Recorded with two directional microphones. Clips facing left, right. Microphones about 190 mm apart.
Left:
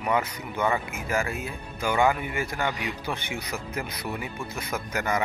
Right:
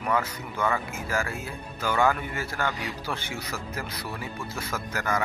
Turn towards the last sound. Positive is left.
turn(degrees=20)  # may be behind; listen again after turning